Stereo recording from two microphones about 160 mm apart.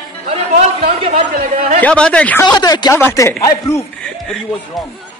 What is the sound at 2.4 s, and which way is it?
Speech, 25° left (ahead or behind).